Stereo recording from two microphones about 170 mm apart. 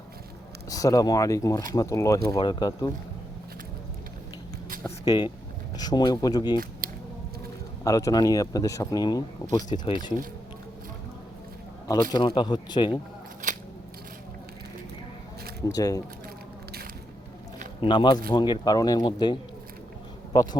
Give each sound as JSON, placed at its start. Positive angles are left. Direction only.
{"t": 0.7, "sound": "speech", "side_deg": 20}
{"t": 4.8, "sound": "speech", "side_deg": 25}
{"t": 6.8, "sound": "a sound", "side_deg": -55}
{"t": 7.9, "sound": "speech", "side_deg": 20}
{"t": 12.1, "sound": "speech", "side_deg": 25}
{"t": 15.6, "sound": "speech", "side_deg": 20}
{"t": 17.7, "sound": "a man's voice", "side_deg": 25}